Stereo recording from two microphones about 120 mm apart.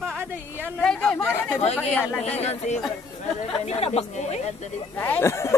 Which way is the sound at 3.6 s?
60° left (ahead or behind).